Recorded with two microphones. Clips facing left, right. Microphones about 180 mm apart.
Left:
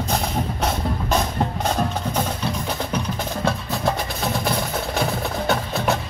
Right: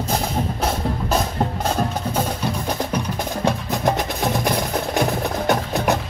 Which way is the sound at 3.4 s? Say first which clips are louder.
Right 3 dB; 15° right (ahead or behind).